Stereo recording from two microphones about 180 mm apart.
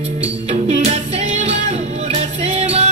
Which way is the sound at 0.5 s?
35° right (ahead or behind).